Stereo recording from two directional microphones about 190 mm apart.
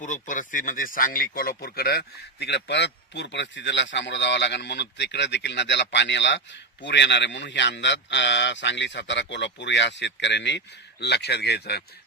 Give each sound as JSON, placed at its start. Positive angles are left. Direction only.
{"t": 0.0, "sound": "speech", "side_deg": 40}